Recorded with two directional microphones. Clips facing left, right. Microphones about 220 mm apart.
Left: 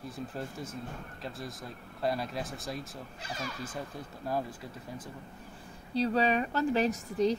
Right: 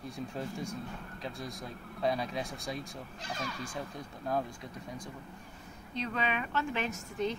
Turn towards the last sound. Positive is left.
turn(degrees=35)  # may be behind; listen again after turning